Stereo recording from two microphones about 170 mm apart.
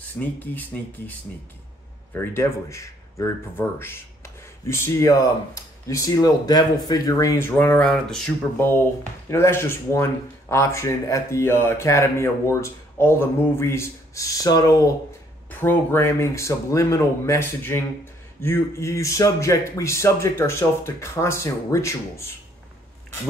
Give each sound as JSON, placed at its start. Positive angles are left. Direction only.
{"t": 0.2, "sound": "speech", "side_deg": 10}
{"t": 2.1, "sound": "speech", "side_deg": 15}
{"t": 9.3, "sound": "speech", "side_deg": 15}
{"t": 15.5, "sound": "speech", "side_deg": 10}